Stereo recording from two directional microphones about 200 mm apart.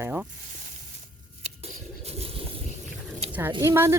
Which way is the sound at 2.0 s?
30° right (ahead or behind).